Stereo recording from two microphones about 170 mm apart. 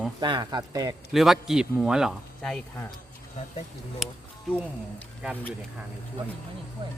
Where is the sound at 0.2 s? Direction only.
25° right (ahead or behind).